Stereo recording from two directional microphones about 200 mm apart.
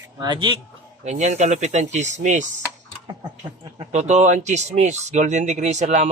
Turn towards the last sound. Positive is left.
turn(degrees=-35)  # may be behind; listen again after turning